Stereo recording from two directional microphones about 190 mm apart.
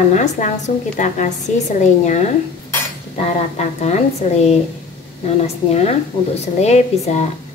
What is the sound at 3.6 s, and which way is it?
A woman's voice, 35° left (ahead or behind).